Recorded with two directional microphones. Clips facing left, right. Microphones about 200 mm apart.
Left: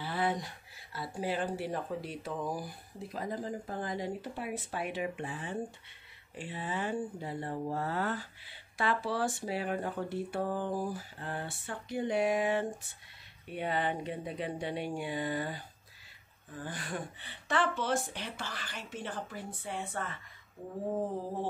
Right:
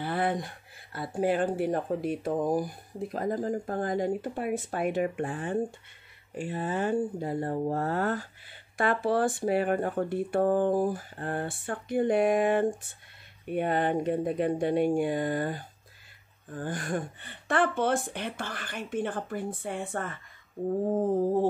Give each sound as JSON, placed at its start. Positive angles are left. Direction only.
{"t": 0.0, "sound": "speech", "side_deg": -55}